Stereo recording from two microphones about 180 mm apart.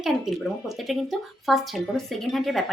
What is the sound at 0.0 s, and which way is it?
Speech, centre (ahead or behind).